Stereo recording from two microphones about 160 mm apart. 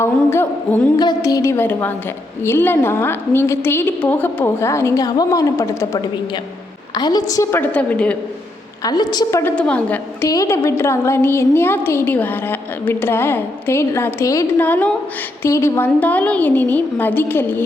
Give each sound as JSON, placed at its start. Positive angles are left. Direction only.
{"t": 0.0, "sound": "a woman's voice", "side_deg": 15}
{"t": 7.6, "sound": "a woman's voice", "side_deg": 10}
{"t": 8.8, "sound": "a woman's voice", "side_deg": 25}
{"t": 9.4, "sound": "a woman's voice", "side_deg": 5}
{"t": 10.2, "sound": "a woman's voice", "side_deg": 20}